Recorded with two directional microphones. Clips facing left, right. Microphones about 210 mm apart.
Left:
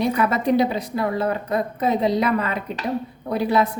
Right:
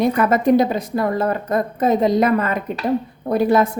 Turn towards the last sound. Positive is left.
turn(degrees=-45)  # may be behind; listen again after turning